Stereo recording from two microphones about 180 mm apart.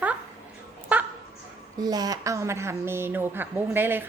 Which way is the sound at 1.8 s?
20° right (ahead or behind).